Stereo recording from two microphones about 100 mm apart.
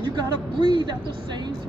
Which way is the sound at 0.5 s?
50° right (ahead or behind).